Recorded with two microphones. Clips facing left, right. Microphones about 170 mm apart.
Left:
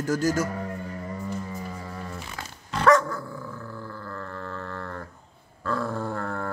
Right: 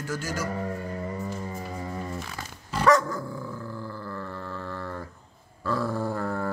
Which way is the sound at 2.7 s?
5° right (ahead or behind).